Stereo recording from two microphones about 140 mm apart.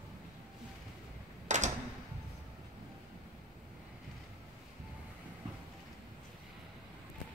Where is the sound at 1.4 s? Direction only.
60° right (ahead or behind).